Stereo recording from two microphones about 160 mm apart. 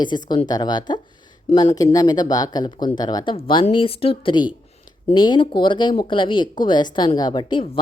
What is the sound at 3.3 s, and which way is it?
Speech, 35° left (ahead or behind).